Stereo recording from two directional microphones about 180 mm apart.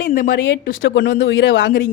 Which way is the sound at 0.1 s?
55° left (ahead or behind).